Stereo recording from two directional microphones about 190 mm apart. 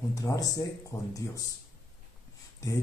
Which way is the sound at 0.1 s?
15° left (ahead or behind).